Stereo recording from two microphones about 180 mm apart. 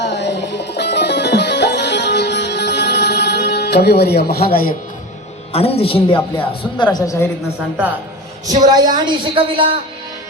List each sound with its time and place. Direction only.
0.0 s music: 75° left (ahead or behind); by 4.7 s 55° left (ahead or behind)
5.5 s a woman's voice: 35° left (ahead or behind); by 7.3 s 15° left (ahead or behind)
8.4 s a woman's voice: 20° right (ahead or behind)